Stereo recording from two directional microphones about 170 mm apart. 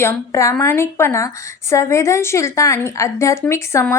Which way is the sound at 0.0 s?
15° left (ahead or behind).